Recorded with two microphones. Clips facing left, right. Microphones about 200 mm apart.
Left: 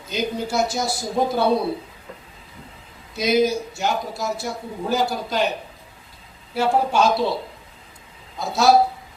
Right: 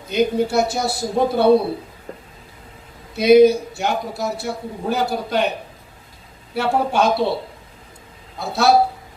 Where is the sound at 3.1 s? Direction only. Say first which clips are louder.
Right 8 dB; 60° right (ahead or behind).